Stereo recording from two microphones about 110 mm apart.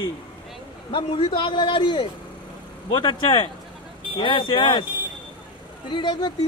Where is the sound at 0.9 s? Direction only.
50° left (ahead or behind).